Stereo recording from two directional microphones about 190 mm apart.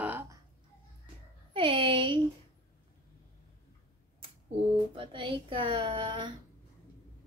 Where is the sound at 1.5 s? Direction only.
25° right (ahead or behind).